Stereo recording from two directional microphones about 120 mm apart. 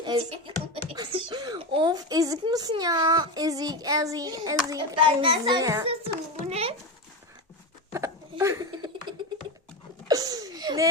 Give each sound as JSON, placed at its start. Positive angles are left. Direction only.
{"t": 0.2, "sound": "speech", "side_deg": -50}
{"t": 1.1, "sound": "speech", "side_deg": -40}
{"t": 4.9, "sound": "speech", "side_deg": -45}
{"t": 5.8, "sound": "a child's voice", "side_deg": -50}
{"t": 7.9, "sound": "speech", "side_deg": -25}
{"t": 10.1, "sound": "a sound", "side_deg": -30}